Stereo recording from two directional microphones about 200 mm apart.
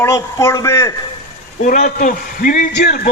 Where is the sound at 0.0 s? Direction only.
15° left (ahead or behind).